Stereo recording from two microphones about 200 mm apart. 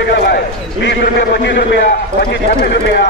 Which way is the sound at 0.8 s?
55° left (ahead or behind).